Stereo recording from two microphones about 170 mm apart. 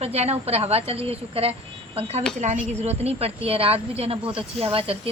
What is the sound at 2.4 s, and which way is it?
A woman's voice, 45° right (ahead or behind).